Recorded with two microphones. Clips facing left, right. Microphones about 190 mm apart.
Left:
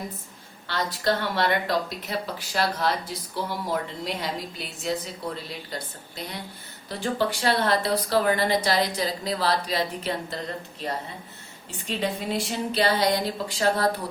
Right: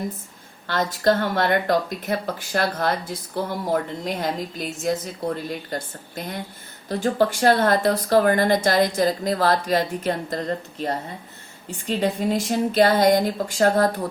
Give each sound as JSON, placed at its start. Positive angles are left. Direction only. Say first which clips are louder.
{"t": 0.7, "sound": "speech", "louder": "right 5 dB", "side_deg": -45}
{"t": 11.9, "sound": "speech", "louder": "right 6 dB", "side_deg": -45}